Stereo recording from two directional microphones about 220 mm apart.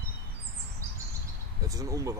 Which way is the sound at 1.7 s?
15° right (ahead or behind).